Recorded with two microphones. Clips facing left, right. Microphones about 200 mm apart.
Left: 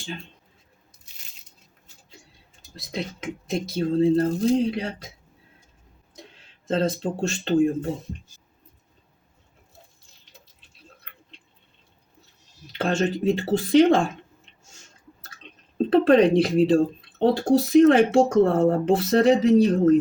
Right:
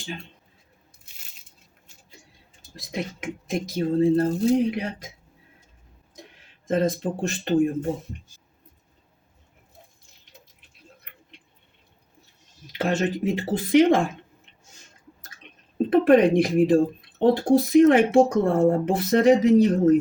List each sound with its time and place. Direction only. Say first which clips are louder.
2.9 s speech: even; 15° right (ahead or behind)
6.7 s speech: right 1 dB; 15° right (ahead or behind)
12.7 s speech: left 1 dB; 15° right (ahead or behind)
15.8 s speech: even; 15° right (ahead or behind)